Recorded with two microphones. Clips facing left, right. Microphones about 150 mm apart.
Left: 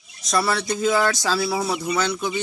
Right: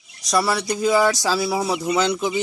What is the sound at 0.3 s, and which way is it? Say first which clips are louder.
Speech: right 1 dB; 10° right (ahead or behind).